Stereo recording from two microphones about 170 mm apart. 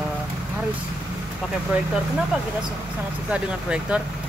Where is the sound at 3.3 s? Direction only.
5° right (ahead or behind).